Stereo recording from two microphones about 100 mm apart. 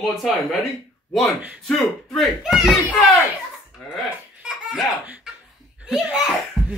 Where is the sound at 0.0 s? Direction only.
Centre (ahead or behind).